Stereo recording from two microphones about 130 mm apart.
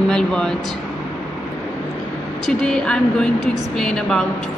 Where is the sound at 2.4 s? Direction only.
5° left (ahead or behind).